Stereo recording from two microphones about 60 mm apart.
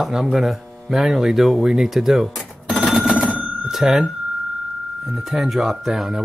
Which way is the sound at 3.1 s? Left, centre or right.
Right.